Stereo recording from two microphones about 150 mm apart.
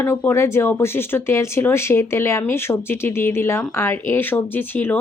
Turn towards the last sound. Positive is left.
turn(degrees=15)  # may be behind; listen again after turning